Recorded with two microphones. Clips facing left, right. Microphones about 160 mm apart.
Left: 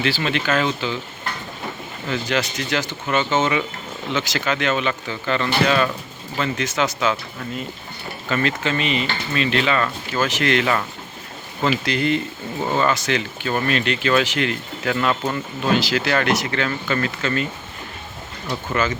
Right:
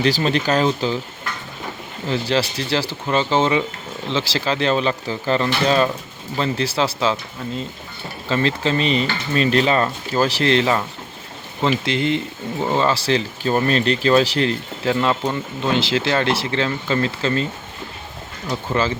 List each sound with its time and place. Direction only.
0.0 s speech: 35° right (ahead or behind)
2.0 s speech: 30° right (ahead or behind)
11.9 s speech: 20° right (ahead or behind)
18.7 s speech: 30° right (ahead or behind)